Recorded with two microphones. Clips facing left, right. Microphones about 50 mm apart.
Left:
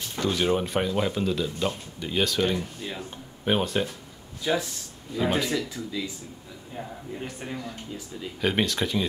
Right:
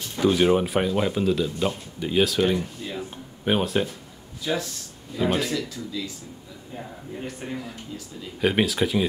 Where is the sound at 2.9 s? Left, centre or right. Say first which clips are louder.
Right 4 dB; centre.